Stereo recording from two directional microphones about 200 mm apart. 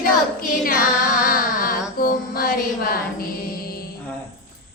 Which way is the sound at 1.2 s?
45° left (ahead or behind).